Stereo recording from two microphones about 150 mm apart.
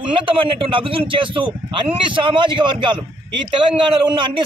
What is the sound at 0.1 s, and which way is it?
A man's voice, 35° right (ahead or behind).